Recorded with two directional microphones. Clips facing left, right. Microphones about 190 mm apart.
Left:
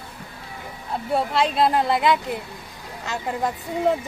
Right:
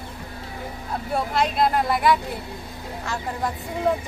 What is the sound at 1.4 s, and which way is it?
A woman's voice, 30° left (ahead or behind).